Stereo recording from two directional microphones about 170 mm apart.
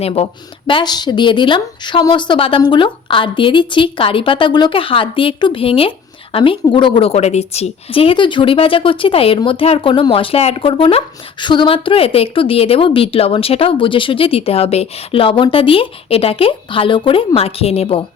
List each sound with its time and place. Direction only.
0.0 s a woman's voice: 35° left (ahead or behind)
0.7 s a woman's voice: 25° left (ahead or behind)